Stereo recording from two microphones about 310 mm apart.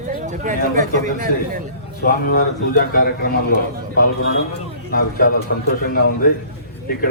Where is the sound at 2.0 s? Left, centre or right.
Left.